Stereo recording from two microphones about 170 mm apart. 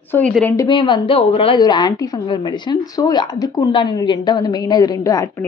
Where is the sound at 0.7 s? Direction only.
30° left (ahead or behind).